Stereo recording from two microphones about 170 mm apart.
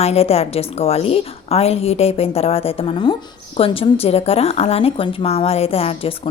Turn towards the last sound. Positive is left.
turn(degrees=35)  # may be behind; listen again after turning